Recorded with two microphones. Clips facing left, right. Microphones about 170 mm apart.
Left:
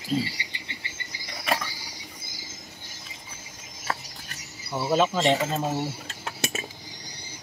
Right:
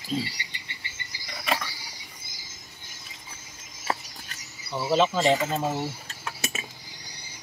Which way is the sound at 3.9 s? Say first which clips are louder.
Right 2 dB; 10° right (ahead or behind).